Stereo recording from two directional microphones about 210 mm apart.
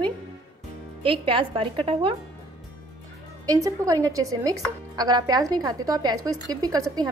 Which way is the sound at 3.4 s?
15° right (ahead or behind).